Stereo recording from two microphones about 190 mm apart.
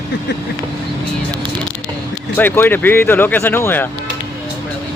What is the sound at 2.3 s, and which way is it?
Speech, 10° left (ahead or behind).